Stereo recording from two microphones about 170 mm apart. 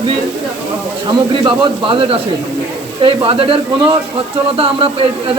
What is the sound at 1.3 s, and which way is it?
Speech, 30° right (ahead or behind).